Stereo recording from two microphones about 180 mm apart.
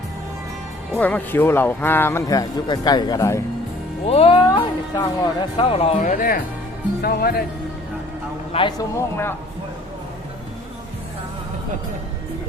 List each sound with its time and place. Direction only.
0.9 s speech: 10° left (ahead or behind)
4.0 s speech: 30° left (ahead or behind)
4.9 s speech: 20° left (ahead or behind)
5.5 s speech: 30° left (ahead or behind); by 7.4 s 60° left (ahead or behind)
8.5 s speech: 25° left (ahead or behind)
9.0 s speech: 15° left (ahead or behind)